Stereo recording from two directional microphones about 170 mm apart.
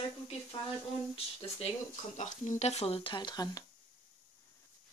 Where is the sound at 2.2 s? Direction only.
45° left (ahead or behind); by 3.7 s 25° left (ahead or behind).